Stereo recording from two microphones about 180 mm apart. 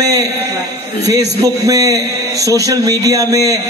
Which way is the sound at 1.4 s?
20° right (ahead or behind).